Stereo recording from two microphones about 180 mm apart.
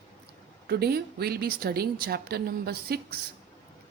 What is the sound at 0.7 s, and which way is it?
Speech, 60° right (ahead or behind).